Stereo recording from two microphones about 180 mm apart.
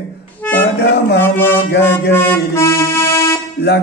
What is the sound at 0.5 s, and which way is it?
Speech, 70° left (ahead or behind).